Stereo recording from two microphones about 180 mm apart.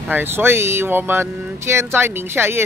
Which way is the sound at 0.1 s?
10° right (ahead or behind).